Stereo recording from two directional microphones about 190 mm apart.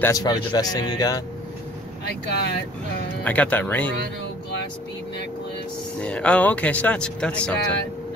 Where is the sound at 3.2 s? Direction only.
5° left (ahead or behind).